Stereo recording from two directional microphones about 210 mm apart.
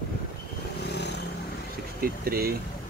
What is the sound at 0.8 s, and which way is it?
Vehicle, 55° left (ahead or behind).